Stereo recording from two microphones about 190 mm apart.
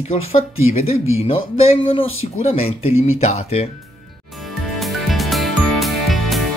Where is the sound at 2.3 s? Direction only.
35° left (ahead or behind).